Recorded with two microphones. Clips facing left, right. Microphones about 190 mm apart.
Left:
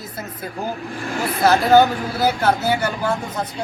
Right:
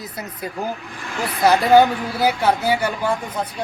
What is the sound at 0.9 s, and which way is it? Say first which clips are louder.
Speech: left 3 dB; 45° left (ahead or behind).